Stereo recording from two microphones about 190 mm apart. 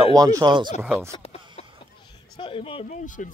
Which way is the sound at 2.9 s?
45° left (ahead or behind).